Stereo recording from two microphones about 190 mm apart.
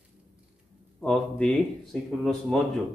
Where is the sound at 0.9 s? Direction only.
5° left (ahead or behind).